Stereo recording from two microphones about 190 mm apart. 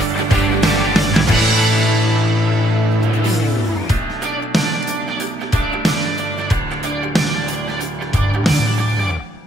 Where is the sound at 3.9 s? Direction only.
Centre (ahead or behind).